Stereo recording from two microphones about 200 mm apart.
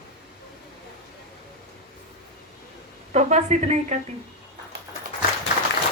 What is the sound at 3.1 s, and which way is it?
Speech, 35° right (ahead or behind).